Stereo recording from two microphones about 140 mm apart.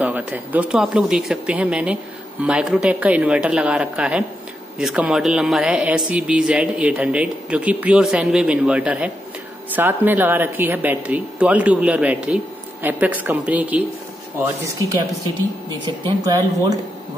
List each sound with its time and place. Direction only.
0.0 s a man's voice: 10° right (ahead or behind)
15.8 s speech: 30° right (ahead or behind)